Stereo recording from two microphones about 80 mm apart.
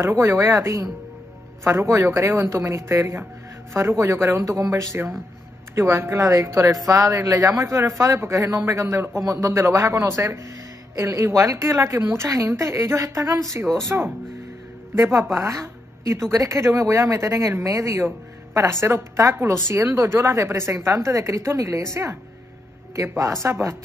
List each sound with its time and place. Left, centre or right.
0.0 s speech: right
13.8 s speech: right
15.3 s speech: right
23.1 s speech: right